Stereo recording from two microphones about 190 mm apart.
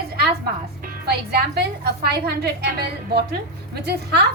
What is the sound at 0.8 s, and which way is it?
A woman's voice, 55° right (ahead or behind).